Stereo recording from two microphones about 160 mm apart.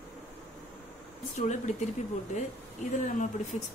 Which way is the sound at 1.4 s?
50° left (ahead or behind).